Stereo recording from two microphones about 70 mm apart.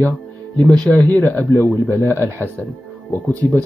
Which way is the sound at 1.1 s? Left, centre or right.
Left.